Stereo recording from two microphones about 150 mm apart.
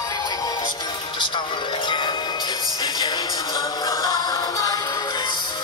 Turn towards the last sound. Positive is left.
turn(degrees=20)  # may be behind; listen again after turning